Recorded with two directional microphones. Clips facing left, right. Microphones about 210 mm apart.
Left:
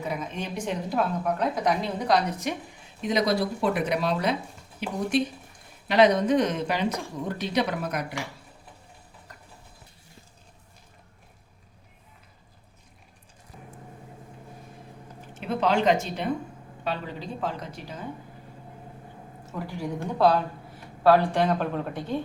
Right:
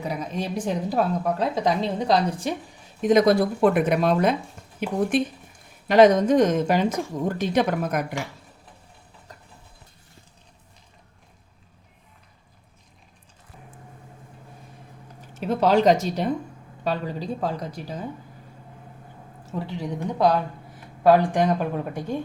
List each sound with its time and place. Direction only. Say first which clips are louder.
0.1 s a woman's voice: right 5 dB; 35° right (ahead or behind)
3.0 s speech: right 7 dB; 50° right (ahead or behind)
15.4 s a woman's voice: right 5 dB; 40° right (ahead or behind)
19.5 s speech: right 2 dB; 20° right (ahead or behind)